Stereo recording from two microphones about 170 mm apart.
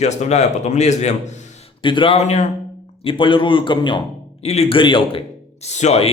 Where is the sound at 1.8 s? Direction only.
30° left (ahead or behind).